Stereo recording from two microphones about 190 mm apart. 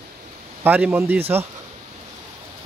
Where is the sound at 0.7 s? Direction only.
10° right (ahead or behind).